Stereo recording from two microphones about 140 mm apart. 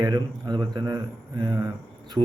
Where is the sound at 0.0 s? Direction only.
30° right (ahead or behind).